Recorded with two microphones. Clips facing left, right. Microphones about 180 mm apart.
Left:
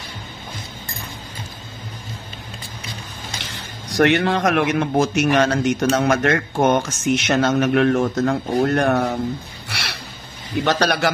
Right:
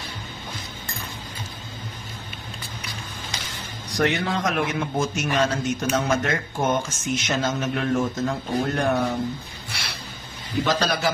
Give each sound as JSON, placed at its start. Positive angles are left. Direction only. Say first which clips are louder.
{"t": 3.9, "sound": "a man's voice", "louder": "left 7 dB", "side_deg": 70}
{"t": 9.7, "sound": "a sound", "louder": "left 5 dB", "side_deg": 70}
{"t": 10.6, "sound": "a man's voice", "louder": "left 4 dB", "side_deg": 70}